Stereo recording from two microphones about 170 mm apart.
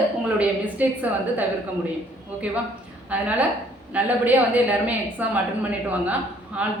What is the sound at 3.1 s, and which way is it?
A woman's voice, 10° right (ahead or behind).